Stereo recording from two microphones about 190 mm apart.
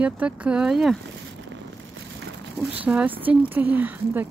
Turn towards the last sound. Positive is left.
turn(degrees=-10)  # may be behind; listen again after turning